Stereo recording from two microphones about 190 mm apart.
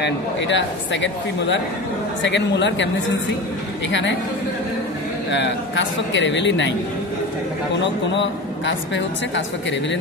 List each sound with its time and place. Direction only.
0.0 s a woman's voice: 70° left (ahead or behind)
5.3 s a woman's voice: 70° left (ahead or behind)
7.8 s a woman's voice: 70° left (ahead or behind)